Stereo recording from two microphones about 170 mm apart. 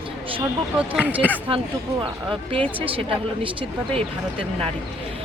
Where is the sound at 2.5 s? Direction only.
30° right (ahead or behind).